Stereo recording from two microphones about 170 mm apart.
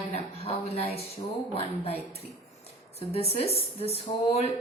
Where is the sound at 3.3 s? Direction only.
35° left (ahead or behind).